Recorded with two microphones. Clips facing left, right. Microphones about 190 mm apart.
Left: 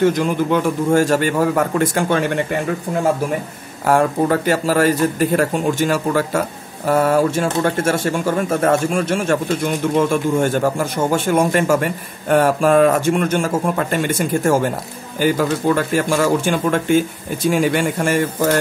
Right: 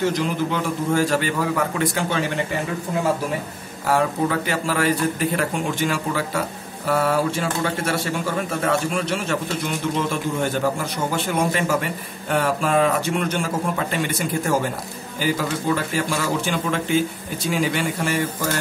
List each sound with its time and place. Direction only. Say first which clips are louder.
0.0 s speech: left 6 dB; 50° left (ahead or behind)
3.8 s speech: left 5 dB; 45° left (ahead or behind)